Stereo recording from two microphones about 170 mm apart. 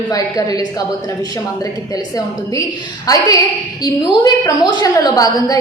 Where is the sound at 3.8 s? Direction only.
20° left (ahead or behind).